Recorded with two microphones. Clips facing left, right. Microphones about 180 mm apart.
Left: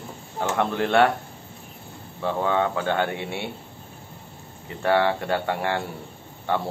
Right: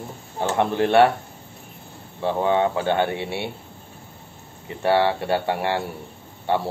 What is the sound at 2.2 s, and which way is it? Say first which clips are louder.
Speech: right 3 dB; 20° right (ahead or behind).